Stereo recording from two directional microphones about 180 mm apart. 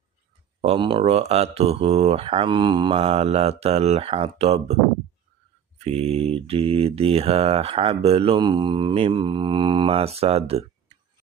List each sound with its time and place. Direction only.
0.6 s speech: 30° right (ahead or behind)
5.8 s speech: 35° right (ahead or behind)